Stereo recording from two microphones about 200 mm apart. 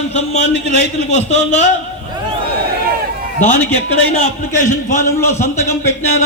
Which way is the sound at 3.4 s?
35° left (ahead or behind).